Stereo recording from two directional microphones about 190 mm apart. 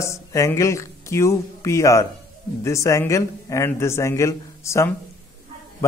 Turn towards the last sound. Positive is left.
turn(degrees=15)  # may be behind; listen again after turning